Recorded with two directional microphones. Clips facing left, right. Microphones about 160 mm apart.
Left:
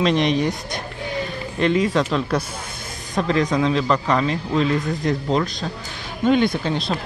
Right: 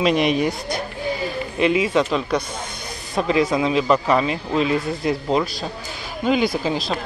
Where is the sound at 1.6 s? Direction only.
5° right (ahead or behind).